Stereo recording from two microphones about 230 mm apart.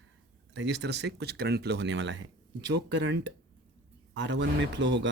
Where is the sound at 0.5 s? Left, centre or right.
Right.